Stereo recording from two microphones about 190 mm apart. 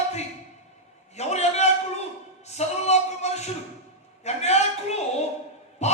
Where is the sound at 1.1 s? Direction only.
35° left (ahead or behind).